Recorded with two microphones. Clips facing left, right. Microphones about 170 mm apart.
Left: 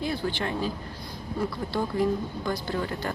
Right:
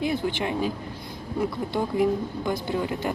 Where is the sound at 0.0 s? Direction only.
20° right (ahead or behind).